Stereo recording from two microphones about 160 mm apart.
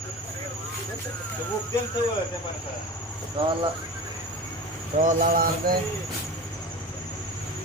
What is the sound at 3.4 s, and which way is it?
Speech, 30° right (ahead or behind).